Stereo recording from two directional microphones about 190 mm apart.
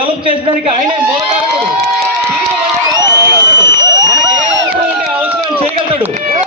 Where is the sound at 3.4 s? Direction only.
20° right (ahead or behind).